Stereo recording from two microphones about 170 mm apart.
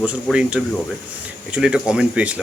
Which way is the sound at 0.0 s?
5° right (ahead or behind).